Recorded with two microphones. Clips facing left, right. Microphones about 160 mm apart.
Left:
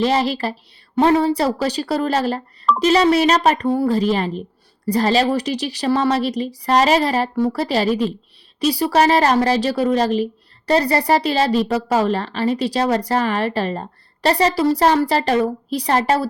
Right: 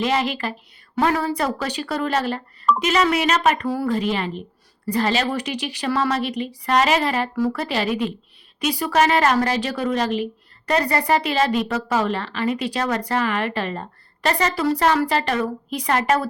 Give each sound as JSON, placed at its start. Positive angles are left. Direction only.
{"t": 0.0, "sound": "a woman's voice", "side_deg": 35}